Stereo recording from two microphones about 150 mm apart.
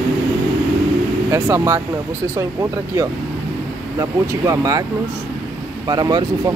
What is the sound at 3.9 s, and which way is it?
Speech, 20° right (ahead or behind).